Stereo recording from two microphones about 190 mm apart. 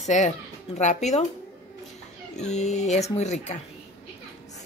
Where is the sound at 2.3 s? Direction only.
35° left (ahead or behind).